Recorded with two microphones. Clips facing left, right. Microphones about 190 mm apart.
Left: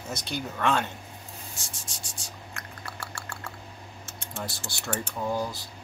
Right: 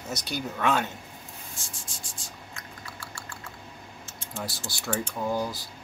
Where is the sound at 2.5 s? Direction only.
65° left (ahead or behind).